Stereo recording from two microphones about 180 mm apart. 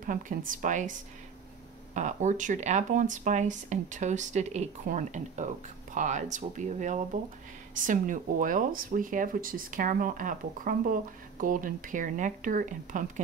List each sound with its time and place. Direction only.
0.0 s speech: 50° right (ahead or behind)
2.0 s speech: 45° right (ahead or behind)